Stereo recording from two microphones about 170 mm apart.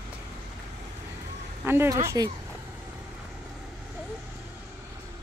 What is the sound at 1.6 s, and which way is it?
Speech, 15° right (ahead or behind).